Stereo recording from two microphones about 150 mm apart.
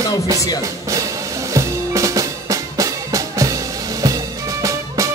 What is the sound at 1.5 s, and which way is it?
Music, 20° right (ahead or behind).